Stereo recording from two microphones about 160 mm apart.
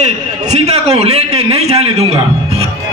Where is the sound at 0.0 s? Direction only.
45° right (ahead or behind).